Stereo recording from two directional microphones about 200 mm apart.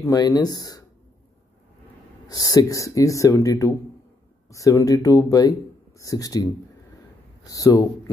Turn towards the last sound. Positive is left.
turn(degrees=15)  # may be behind; listen again after turning